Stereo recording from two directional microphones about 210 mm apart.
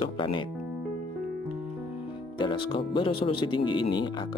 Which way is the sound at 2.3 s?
25° left (ahead or behind).